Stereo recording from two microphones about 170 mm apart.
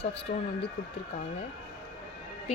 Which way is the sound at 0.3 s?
75° left (ahead or behind).